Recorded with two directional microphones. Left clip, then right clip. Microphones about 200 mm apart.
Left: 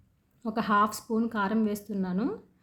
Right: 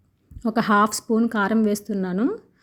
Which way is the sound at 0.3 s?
35° right (ahead or behind).